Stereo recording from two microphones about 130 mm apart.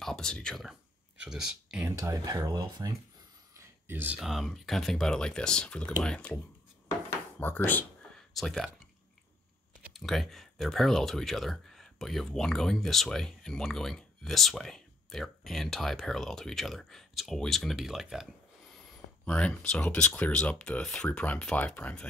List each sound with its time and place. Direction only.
0.0 s speech: 5° left (ahead or behind)
1.9 s speech: 25° right (ahead or behind)
3.5 s speech: 20° right (ahead or behind); by 6.4 s 10° left (ahead or behind)
7.1 s drawer open or close: 15° left (ahead or behind)
8.4 s speech: centre (ahead or behind)
9.9 s speech: centre (ahead or behind)
19.2 s speech: 10° left (ahead or behind)